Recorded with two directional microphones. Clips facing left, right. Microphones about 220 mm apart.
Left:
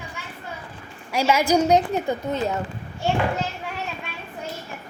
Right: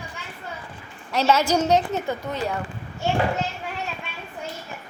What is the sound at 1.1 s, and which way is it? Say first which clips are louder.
A woman's voice: left 1 dB; 10° left (ahead or behind).